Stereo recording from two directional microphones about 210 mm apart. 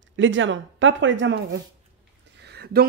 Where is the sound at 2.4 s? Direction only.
50° right (ahead or behind).